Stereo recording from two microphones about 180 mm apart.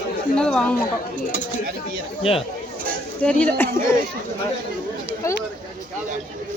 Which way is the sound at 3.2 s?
5° left (ahead or behind).